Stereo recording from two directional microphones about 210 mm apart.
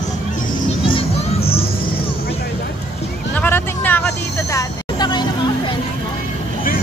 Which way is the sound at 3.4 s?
10° left (ahead or behind).